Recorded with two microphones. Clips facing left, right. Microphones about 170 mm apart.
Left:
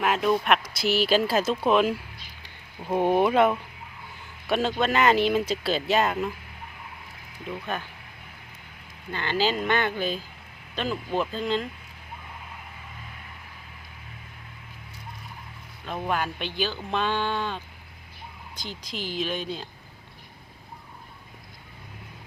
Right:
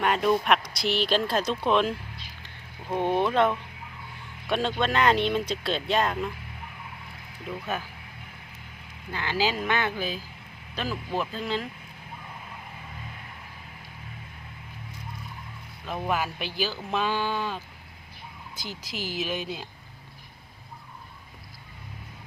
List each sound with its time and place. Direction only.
0.0 s speech: centre (ahead or behind)
9.1 s speech: 5° right (ahead or behind)
15.9 s speech: 5° right (ahead or behind)